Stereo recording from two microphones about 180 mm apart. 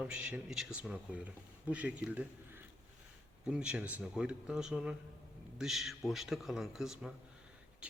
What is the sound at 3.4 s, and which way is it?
Speech, 5° right (ahead or behind).